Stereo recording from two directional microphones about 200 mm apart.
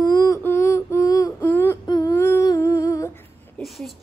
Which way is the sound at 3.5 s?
Centre (ahead or behind).